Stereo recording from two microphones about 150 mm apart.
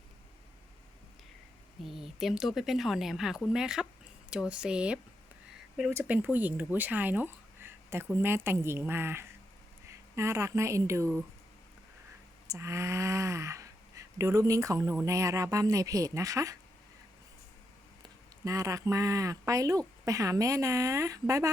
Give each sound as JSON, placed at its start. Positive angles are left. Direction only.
{"t": 1.8, "sound": "speech", "side_deg": 0}
{"t": 12.5, "sound": "speech", "side_deg": -20}
{"t": 18.4, "sound": "speech", "side_deg": -20}